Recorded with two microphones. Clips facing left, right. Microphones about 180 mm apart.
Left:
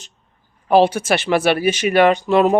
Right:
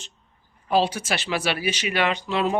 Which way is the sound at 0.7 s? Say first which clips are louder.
Left 8 dB; 60° left (ahead or behind).